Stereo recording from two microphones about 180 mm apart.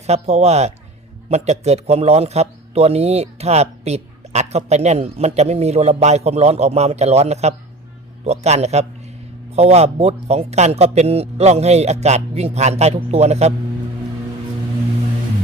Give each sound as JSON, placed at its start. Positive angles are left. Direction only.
{"t": 0.0, "sound": "speech", "side_deg": -35}